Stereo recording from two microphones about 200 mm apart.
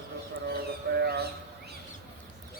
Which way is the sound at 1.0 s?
55° right (ahead or behind).